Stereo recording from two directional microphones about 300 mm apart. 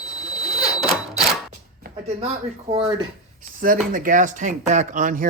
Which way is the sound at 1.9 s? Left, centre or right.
Centre.